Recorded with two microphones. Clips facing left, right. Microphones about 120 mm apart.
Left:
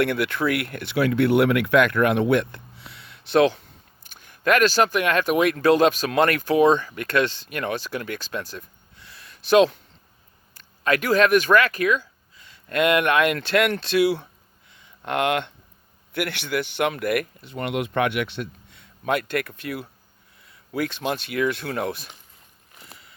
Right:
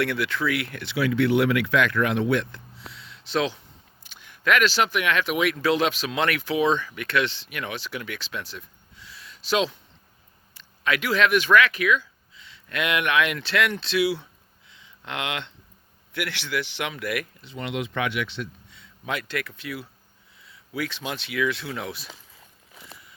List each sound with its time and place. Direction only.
0.0 s speech: 50° left (ahead or behind)
14.7 s a sound: 50° left (ahead or behind)
16.1 s speech: 50° left (ahead or behind)